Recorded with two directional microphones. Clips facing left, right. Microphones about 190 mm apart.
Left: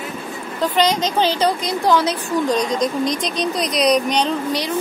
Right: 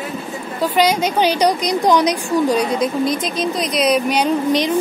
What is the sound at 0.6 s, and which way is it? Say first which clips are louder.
A woman's voice: right 2 dB; 10° right (ahead or behind).